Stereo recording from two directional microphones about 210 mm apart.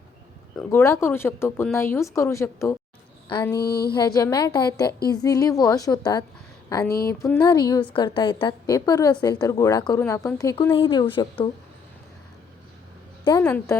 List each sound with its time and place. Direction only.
0.5 s speech: 10° left (ahead or behind)
3.6 s a sound: 50° left (ahead or behind)
3.9 s a woman's voice: 20° left (ahead or behind)
13.4 s speech: 10° left (ahead or behind)